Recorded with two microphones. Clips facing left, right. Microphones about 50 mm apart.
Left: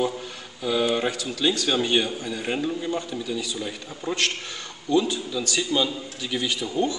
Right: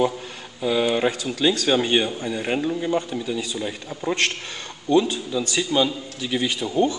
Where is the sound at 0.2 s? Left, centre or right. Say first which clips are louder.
Right 4 dB; right.